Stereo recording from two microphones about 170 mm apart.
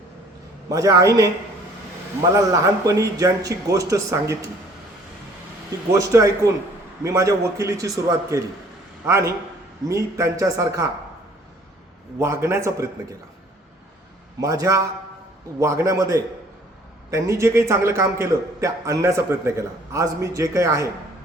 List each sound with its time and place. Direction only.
0.7 s speech: 20° right (ahead or behind)
2.3 s speech: 20° right (ahead or behind)
5.9 s a man's voice: 20° right (ahead or behind)
12.2 s a man's voice: 15° right (ahead or behind)
14.4 s a man's voice: 20° right (ahead or behind)